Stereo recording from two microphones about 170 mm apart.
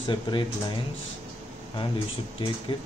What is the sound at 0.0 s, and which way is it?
Speech, 30° left (ahead or behind).